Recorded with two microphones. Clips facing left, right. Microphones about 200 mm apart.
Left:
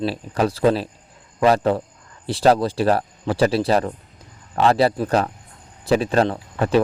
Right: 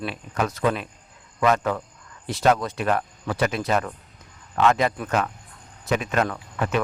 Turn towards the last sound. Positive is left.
turn(degrees=30)  # may be behind; listen again after turning